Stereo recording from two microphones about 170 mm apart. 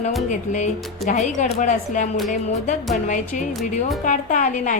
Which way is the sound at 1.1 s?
45° left (ahead or behind).